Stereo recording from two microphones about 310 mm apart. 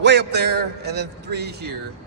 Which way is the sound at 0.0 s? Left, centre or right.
Right.